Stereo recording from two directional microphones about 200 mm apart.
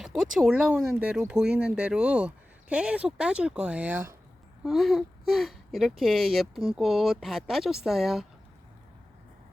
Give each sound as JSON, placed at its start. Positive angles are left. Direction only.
{"t": 0.0, "sound": "speech", "side_deg": 0}